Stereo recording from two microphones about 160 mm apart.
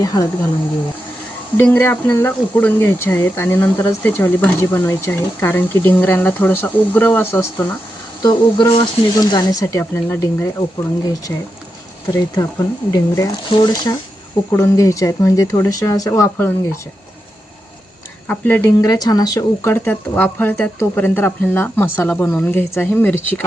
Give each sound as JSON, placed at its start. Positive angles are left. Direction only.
{"t": 0.0, "sound": "speech", "side_deg": 20}
{"t": 1.5, "sound": "speech", "side_deg": 15}
{"t": 8.2, "sound": "speech", "side_deg": 25}
{"t": 18.3, "sound": "speech", "side_deg": 10}